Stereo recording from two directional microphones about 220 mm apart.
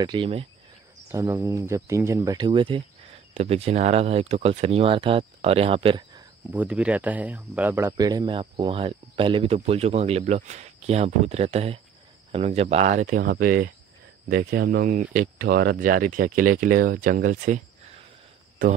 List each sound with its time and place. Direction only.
0.0 s speech: 20° right (ahead or behind)
1.1 s speech: 15° right (ahead or behind)
6.5 s speech: 5° right (ahead or behind); by 17.6 s 35° right (ahead or behind)